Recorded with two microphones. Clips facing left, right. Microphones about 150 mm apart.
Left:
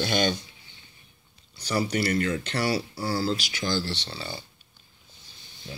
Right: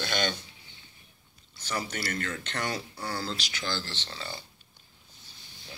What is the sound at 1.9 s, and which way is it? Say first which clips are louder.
Speech: left 9 dB; 15° left (ahead or behind).